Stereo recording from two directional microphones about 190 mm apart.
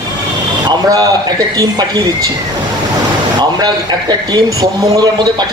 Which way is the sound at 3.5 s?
20° right (ahead or behind).